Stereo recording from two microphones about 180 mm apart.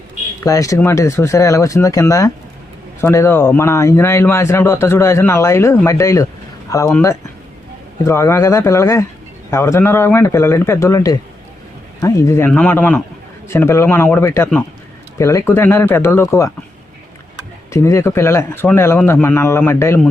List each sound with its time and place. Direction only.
0.4 s speech: 20° left (ahead or behind)
17.7 s speech: 15° left (ahead or behind)